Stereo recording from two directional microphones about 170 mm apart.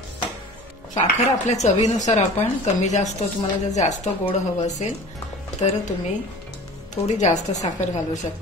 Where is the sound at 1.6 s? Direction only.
40° left (ahead or behind).